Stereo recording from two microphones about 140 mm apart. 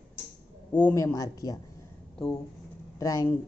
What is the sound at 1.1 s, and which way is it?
Speech, 25° left (ahead or behind).